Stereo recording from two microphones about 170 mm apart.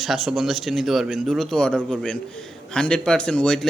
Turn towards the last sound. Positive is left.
turn(degrees=5)  # may be behind; listen again after turning